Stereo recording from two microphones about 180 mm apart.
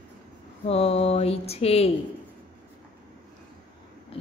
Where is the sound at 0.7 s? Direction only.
35° left (ahead or behind).